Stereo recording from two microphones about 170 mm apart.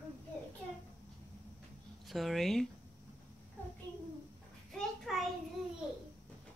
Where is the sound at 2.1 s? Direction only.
Centre (ahead or behind).